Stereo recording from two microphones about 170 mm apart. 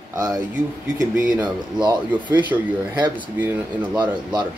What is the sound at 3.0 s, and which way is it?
Speech, 10° right (ahead or behind).